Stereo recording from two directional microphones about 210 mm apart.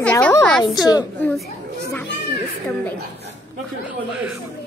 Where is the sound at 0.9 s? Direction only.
20° left (ahead or behind).